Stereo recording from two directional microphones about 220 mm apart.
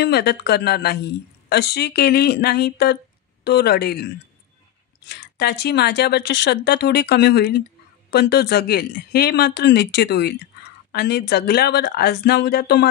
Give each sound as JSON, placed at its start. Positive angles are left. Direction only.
{"t": 0.0, "sound": "speech", "side_deg": 45}